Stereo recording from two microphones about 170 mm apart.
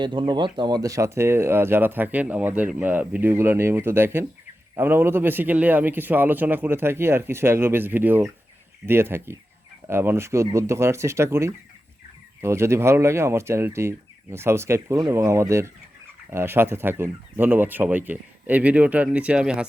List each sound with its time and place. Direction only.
0.0 s speech: 25° right (ahead or behind); by 19.6 s 5° right (ahead or behind)